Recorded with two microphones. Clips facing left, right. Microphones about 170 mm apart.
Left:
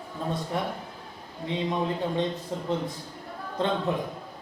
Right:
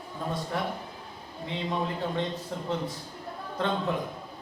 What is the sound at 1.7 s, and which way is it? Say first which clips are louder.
Speech: left 1 dB; 20° left (ahead or behind).